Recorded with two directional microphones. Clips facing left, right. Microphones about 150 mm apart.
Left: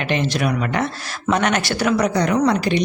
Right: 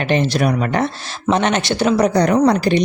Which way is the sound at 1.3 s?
25° right (ahead or behind).